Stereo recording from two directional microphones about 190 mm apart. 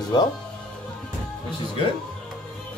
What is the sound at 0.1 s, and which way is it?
Speech, 20° left (ahead or behind).